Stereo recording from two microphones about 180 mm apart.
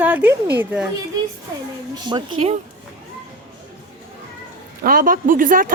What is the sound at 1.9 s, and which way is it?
Speech, 25° right (ahead or behind).